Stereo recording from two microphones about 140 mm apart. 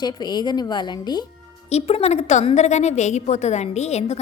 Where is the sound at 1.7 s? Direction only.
50° left (ahead or behind).